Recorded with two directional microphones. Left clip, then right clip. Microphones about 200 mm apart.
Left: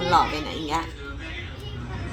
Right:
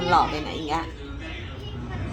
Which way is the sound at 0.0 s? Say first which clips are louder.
Even; 5° right (ahead or behind).